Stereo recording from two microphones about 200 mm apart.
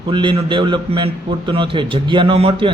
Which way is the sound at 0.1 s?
25° right (ahead or behind).